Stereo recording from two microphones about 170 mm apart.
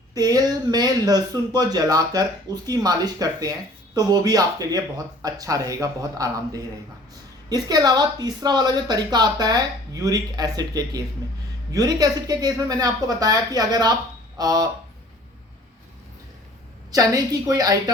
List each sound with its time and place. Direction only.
0.1 s speech: 20° right (ahead or behind)
16.9 s speech: 20° right (ahead or behind)